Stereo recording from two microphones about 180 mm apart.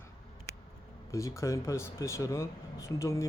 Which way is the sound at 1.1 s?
15° left (ahead or behind).